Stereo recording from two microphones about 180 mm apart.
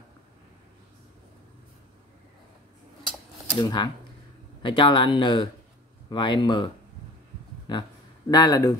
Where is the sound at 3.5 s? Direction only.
25° left (ahead or behind).